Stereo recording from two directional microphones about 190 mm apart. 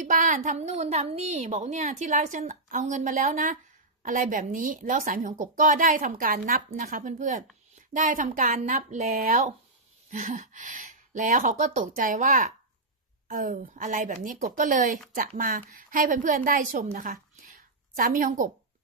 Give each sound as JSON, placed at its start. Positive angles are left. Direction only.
{"t": 0.0, "sound": "a woman's voice", "side_deg": -40}